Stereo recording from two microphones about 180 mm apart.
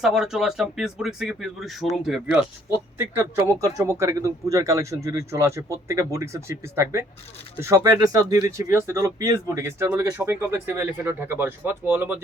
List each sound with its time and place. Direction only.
0.0 s speech: centre (ahead or behind)